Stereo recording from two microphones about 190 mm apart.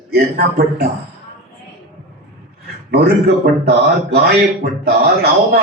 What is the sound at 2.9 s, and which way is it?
A man's voice, 55° right (ahead or behind).